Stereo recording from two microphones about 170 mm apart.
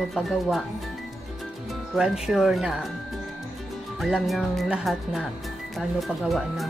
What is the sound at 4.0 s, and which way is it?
Speech, centre (ahead or behind).